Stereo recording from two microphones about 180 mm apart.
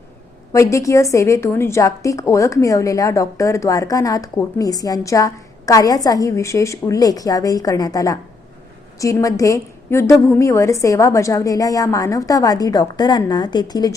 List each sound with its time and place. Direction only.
0.5 s a woman's voice: 15° left (ahead or behind)